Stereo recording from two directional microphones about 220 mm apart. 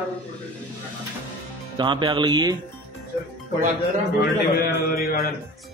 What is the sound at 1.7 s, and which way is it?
Speech, 20° right (ahead or behind).